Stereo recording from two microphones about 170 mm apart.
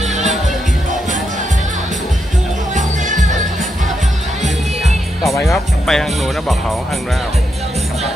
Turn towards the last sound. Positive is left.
turn(degrees=0)  # may be behind; listen again after turning